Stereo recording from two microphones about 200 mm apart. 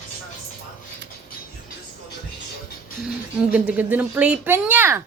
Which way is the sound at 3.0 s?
5° right (ahead or behind).